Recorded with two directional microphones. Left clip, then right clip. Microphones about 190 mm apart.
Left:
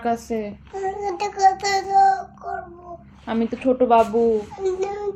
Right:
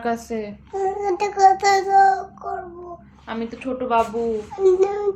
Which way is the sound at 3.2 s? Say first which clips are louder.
Left 7 dB; 20° left (ahead or behind).